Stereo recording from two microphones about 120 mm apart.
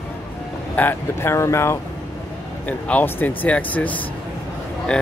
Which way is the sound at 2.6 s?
10° left (ahead or behind).